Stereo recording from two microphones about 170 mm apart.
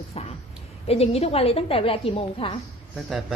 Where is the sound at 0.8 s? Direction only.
35° left (ahead or behind).